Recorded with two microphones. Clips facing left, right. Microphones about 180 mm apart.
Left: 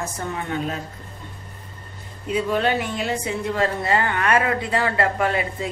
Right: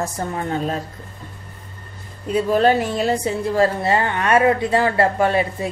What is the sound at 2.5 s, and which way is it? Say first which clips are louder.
A woman's voice: right 8 dB; 40° right (ahead or behind).